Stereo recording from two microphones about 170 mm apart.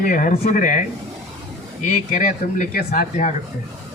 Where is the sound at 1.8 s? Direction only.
50° left (ahead or behind).